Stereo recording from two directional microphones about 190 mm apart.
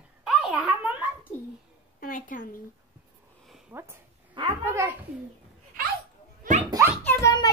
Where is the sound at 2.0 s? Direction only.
45° left (ahead or behind).